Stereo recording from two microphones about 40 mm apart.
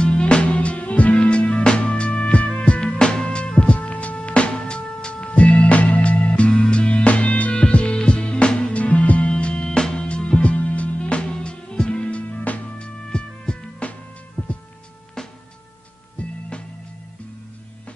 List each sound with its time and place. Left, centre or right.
0.0 s music: left
3.0 s music: left
9.3 s music: left
10.4 s music: left
15.2 s music: centre
16.2 s music: left